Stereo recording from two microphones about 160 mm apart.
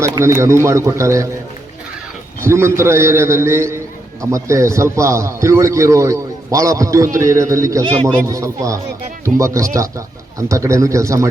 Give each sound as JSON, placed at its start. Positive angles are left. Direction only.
{"t": 0.0, "sound": "a man's voice", "side_deg": -20}
{"t": 2.4, "sound": "a man's voice", "side_deg": -15}